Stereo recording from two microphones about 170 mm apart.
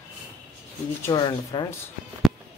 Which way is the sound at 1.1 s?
25° left (ahead or behind).